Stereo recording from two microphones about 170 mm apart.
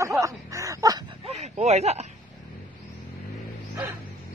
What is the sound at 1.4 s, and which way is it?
Speech, 40° right (ahead or behind).